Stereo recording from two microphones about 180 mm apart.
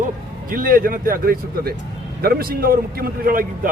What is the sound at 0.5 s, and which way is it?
A man's voice, 50° right (ahead or behind).